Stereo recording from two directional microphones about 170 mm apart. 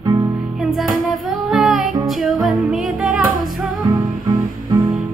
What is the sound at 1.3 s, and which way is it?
Child singing, centre (ahead or behind).